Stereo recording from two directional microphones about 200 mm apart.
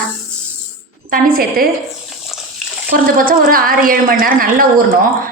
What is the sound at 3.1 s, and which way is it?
A woman's voice, 45° right (ahead or behind).